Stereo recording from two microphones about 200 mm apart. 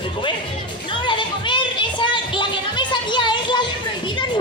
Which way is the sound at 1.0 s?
25° left (ahead or behind).